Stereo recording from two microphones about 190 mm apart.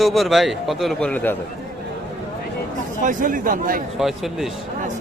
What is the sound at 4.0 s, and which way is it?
Speech, centre (ahead or behind).